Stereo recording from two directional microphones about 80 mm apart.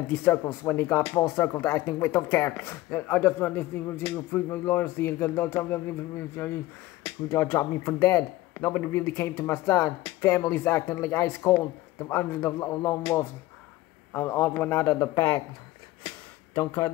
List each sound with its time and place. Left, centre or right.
0.1 s speech: left
16.5 s speech: left